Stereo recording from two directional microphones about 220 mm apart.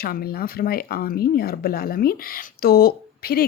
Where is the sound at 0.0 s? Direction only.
45° left (ahead or behind).